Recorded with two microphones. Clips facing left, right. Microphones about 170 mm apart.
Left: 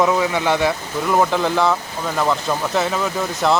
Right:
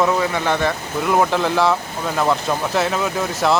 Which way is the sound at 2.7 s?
Centre (ahead or behind).